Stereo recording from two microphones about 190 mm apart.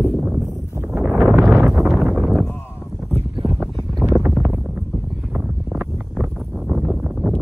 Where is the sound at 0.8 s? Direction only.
5° right (ahead or behind).